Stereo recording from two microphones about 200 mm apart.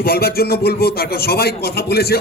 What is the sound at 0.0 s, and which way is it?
A man's voice, 50° left (ahead or behind).